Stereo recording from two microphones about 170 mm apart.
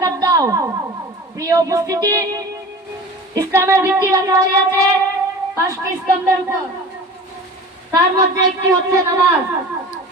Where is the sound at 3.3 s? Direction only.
20° right (ahead or behind).